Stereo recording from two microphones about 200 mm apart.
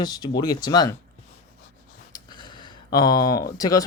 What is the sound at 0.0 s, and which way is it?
Speech, 20° left (ahead or behind).